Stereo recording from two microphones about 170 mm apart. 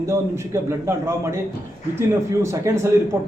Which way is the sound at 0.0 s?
15° right (ahead or behind).